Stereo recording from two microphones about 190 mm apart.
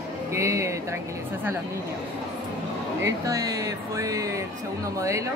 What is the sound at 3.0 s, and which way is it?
Speech, 15° right (ahead or behind).